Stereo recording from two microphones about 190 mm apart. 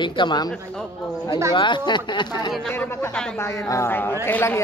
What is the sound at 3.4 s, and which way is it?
Speech, 15° left (ahead or behind).